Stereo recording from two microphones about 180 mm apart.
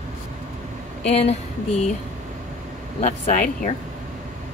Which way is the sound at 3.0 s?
40° left (ahead or behind).